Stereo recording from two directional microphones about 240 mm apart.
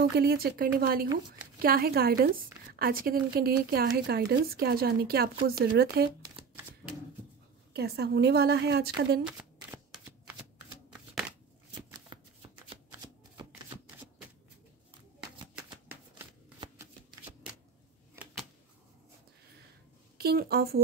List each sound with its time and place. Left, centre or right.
0.2 s speech: right
7.7 s speech: right
9.2 s shuffling cards: centre
11.7 s shuffling cards: centre
15.7 s shuffling cards: centre
20.2 s a woman's voice: right